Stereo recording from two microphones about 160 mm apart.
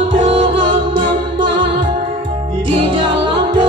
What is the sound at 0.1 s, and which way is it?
Music, 35° right (ahead or behind).